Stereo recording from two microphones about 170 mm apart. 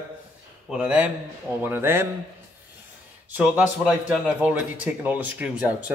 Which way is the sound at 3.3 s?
10° right (ahead or behind).